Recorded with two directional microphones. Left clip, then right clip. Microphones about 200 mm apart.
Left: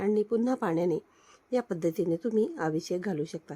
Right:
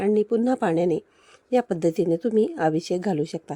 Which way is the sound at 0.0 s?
25° right (ahead or behind).